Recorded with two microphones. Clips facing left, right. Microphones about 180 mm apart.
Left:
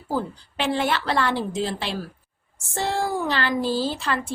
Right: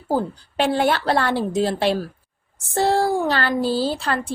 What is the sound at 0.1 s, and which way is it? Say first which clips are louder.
A woman's voice: right 5 dB; 40° right (ahead or behind).